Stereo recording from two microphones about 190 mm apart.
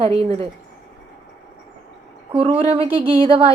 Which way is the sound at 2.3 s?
30° right (ahead or behind).